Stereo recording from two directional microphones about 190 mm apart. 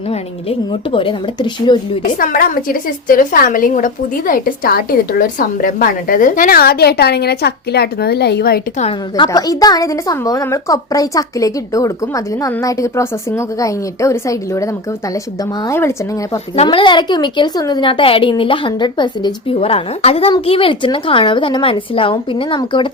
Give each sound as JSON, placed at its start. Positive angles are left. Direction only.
{"t": 0.1, "sound": "a woman's voice", "side_deg": 30}
{"t": 2.1, "sound": "a woman's voice", "side_deg": 50}
{"t": 8.8, "sound": "a woman's voice", "side_deg": 25}
{"t": 16.6, "sound": "a woman's voice", "side_deg": 25}